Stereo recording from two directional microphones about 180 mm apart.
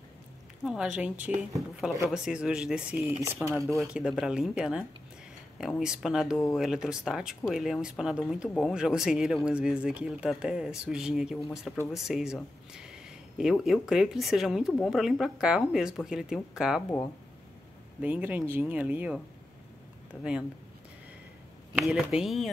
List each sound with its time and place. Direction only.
0.7 s speech: 5° right (ahead or behind)
18.0 s speech: 10° right (ahead or behind)
21.7 s speech: centre (ahead or behind)